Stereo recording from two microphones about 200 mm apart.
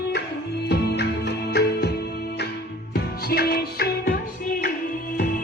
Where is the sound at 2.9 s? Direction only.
50° left (ahead or behind).